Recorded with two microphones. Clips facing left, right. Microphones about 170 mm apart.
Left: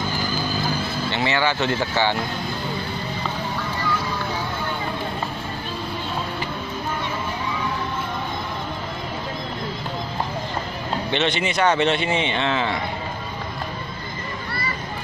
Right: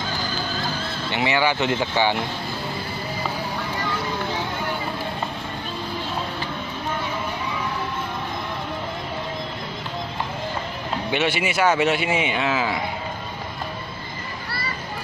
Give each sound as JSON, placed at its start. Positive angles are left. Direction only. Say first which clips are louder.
{"t": 1.1, "sound": "speech", "louder": "right 2 dB", "side_deg": -15}
{"t": 11.1, "sound": "speech", "louder": "even", "side_deg": -10}